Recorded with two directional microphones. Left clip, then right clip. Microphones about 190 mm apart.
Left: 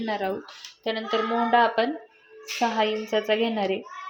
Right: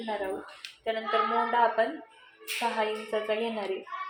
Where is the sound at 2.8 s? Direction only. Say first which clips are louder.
Left 5 dB; 65° left (ahead or behind).